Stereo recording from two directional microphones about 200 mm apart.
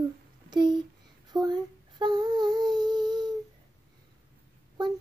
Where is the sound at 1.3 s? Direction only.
20° right (ahead or behind).